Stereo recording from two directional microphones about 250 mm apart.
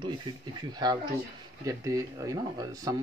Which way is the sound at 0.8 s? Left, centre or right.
Centre.